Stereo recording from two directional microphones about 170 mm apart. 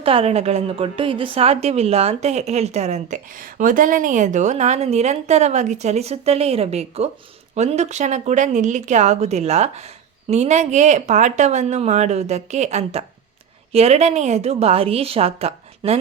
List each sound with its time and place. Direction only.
0.0 s a woman's voice: 35° right (ahead or behind)